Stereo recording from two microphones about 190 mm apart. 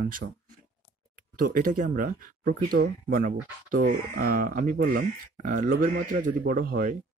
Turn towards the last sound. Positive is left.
turn(degrees=-45)  # may be behind; listen again after turning